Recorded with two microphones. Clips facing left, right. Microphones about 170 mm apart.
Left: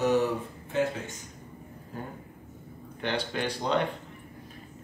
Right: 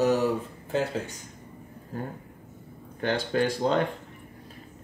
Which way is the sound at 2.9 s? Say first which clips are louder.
Right 5 dB; 45° right (ahead or behind).